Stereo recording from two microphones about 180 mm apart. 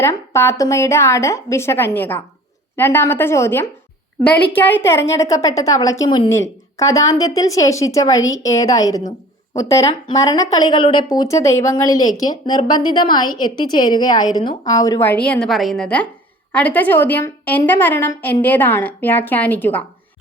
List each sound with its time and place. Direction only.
0.0 s a woman's voice: 15° left (ahead or behind)